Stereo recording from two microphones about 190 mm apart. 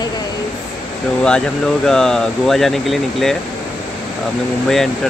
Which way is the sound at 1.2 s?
5° left (ahead or behind).